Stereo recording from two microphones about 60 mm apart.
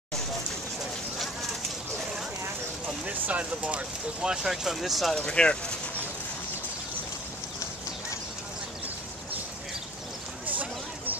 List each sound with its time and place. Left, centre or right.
3.1 s speech: right
4.2 s speech: centre
5.1 s speech: centre
10.4 s a sound: right